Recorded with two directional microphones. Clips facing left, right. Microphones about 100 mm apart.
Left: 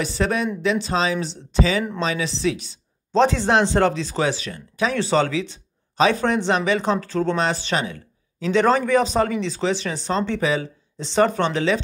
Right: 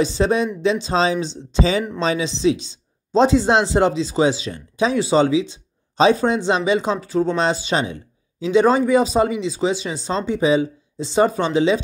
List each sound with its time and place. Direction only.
0.0 s speech: 25° right (ahead or behind)